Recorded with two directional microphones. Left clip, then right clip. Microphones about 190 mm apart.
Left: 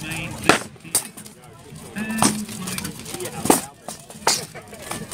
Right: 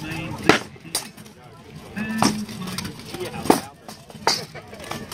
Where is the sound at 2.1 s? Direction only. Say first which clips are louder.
Even; 5° left (ahead or behind).